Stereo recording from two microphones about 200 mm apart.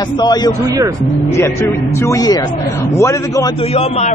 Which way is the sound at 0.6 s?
20° right (ahead or behind).